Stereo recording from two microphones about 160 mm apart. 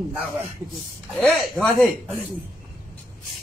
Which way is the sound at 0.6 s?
15° right (ahead or behind).